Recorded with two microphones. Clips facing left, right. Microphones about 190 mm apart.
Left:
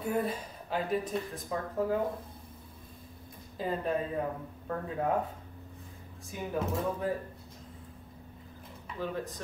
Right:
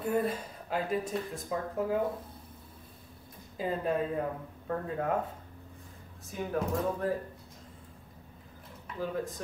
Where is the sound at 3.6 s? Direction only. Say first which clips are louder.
Right 1 dB; centre (ahead or behind).